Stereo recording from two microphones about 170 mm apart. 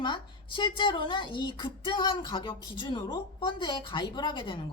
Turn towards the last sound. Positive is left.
turn(degrees=30)  # may be behind; listen again after turning